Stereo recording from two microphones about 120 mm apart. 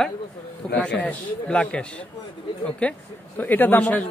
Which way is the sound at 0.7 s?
10° left (ahead or behind).